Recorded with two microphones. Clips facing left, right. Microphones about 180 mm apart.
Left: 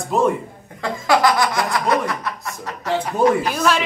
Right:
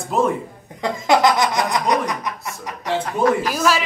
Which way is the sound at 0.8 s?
20° right (ahead or behind).